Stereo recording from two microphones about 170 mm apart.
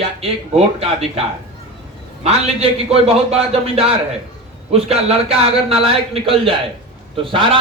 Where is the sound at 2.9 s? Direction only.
35° right (ahead or behind).